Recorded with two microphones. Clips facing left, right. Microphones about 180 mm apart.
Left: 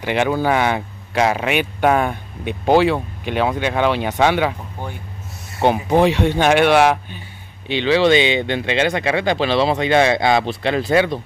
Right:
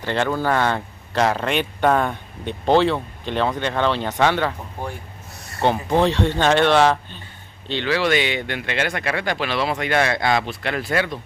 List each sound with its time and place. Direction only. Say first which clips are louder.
0.0 s speech: left 3 dB; 15° left (ahead or behind)
5.6 s speech: left 3 dB; 15° left (ahead or behind)